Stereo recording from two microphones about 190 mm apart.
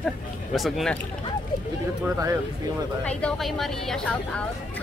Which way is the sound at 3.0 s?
5° left (ahead or behind).